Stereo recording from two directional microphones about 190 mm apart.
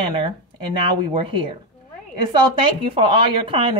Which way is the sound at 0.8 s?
25° right (ahead or behind).